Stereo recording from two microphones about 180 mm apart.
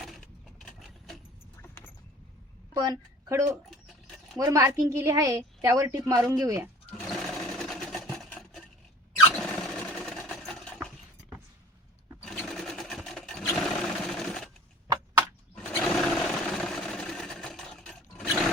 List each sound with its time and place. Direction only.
0.0 s vehicle: centre (ahead or behind)
2.8 s a woman's voice: 20° right (ahead or behind)
7.0 s sewing machine: centre (ahead or behind)
9.3 s a sound: centre (ahead or behind)
12.2 s sewing machine: centre (ahead or behind)
15.5 s sewing machine: 5° left (ahead or behind)